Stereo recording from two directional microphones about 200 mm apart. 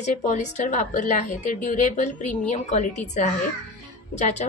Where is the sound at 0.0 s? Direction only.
35° left (ahead or behind).